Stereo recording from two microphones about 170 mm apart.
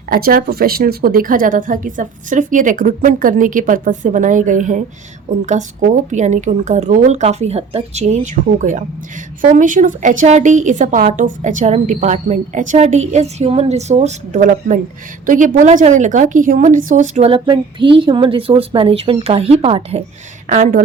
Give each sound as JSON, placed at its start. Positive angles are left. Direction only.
{"t": 0.1, "sound": "a woman's voice", "side_deg": -60}
{"t": 20.5, "sound": "a woman's voice", "side_deg": -55}